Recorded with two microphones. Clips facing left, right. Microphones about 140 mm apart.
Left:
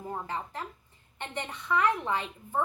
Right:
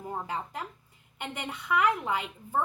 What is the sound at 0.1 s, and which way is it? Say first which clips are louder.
Speech: right 1 dB; 15° right (ahead or behind).